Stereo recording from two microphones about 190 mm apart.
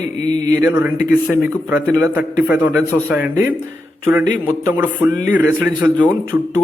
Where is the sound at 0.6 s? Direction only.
15° right (ahead or behind).